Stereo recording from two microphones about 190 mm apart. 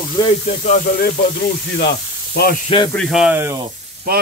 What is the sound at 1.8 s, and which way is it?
Sizzle, 60° left (ahead or behind).